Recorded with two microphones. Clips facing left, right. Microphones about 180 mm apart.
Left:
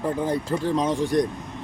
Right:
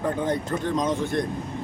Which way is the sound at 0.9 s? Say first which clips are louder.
Left 4 dB; 35° left (ahead or behind).